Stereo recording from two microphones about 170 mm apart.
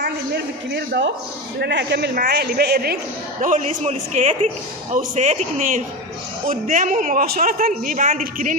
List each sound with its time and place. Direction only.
0.0 s a sound: 80° right
1.6 s speech: 90° right
2.1 s a woman's voice: 70° right (ahead or behind)
3.3 s a man's voice: 50° right (ahead or behind)